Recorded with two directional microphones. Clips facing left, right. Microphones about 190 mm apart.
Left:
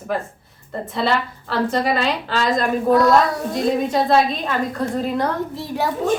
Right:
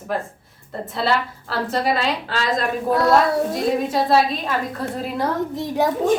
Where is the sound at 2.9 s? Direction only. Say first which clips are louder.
Left 3 dB; 25° right (ahead or behind).